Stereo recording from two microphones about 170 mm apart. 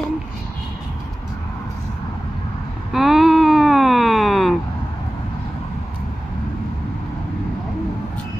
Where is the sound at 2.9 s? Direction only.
Centre (ahead or behind).